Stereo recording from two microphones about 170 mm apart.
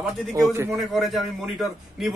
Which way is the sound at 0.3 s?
15° right (ahead or behind).